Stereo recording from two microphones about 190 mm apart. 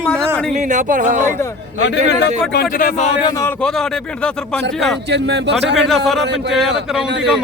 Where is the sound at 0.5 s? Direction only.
40° right (ahead or behind).